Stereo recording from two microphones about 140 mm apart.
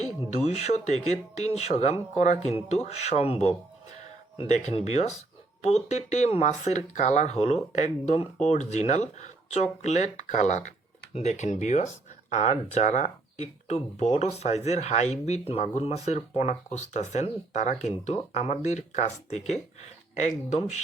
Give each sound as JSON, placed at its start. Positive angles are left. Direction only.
{"t": 0.0, "sound": "speech", "side_deg": 50}